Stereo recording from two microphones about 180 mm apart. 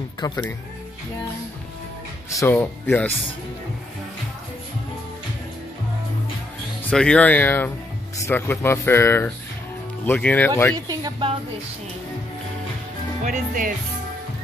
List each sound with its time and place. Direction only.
0.2 s speech: 15° left (ahead or behind)
2.2 s speech: 15° left (ahead or behind)
6.8 s speech: 5° left (ahead or behind)
10.9 s a sound: 25° right (ahead or behind)
13.2 s speech: 50° right (ahead or behind)